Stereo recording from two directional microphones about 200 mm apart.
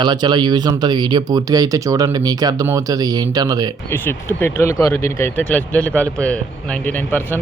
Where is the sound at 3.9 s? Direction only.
10° left (ahead or behind).